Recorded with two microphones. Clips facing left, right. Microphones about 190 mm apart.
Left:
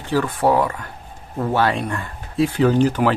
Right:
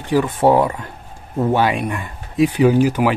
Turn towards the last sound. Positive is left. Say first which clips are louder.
# right 2 dB
turn(degrees=-10)  # may be behind; listen again after turning